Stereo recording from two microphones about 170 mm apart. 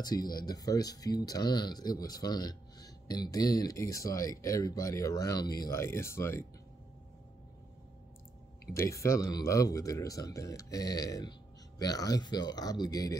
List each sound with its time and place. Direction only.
0.0 s speech: 25° left (ahead or behind)
8.7 s speech: 15° left (ahead or behind)